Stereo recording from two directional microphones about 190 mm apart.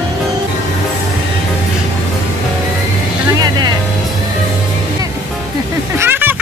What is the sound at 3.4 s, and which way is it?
Music, 20° right (ahead or behind).